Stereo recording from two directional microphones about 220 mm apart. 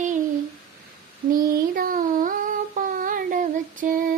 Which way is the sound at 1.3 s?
40° right (ahead or behind).